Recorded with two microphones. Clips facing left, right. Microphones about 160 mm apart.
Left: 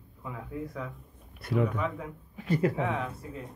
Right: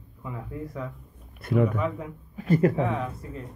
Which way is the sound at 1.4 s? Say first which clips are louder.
Right 4 dB; 50° right (ahead or behind).